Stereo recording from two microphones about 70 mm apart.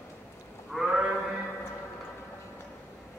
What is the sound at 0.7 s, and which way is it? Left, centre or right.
Sheep, centre.